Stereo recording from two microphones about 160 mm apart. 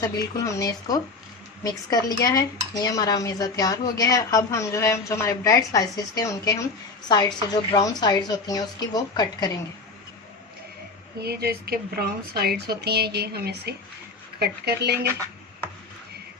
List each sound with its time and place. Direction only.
0.0 s dishes: 20° left (ahead or behind)
11.2 s speech: 80° right